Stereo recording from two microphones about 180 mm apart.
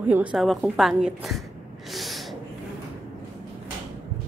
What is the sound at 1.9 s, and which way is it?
Snort, centre (ahead or behind).